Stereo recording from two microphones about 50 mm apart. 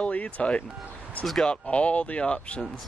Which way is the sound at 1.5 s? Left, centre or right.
Left.